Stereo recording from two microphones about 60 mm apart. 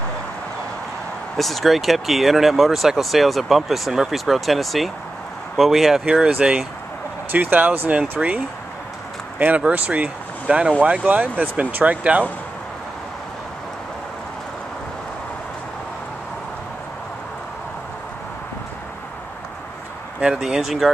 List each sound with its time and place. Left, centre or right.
1.3 s speech: centre
6.2 s speech: centre
7.3 s speech: right
8.2 s speech: centre
9.7 s speech: right
20.2 s speech: centre